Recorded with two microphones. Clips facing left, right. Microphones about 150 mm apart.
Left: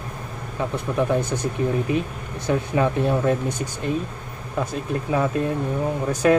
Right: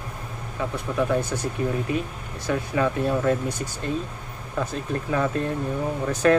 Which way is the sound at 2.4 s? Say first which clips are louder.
Left 2 dB; 20° left (ahead or behind).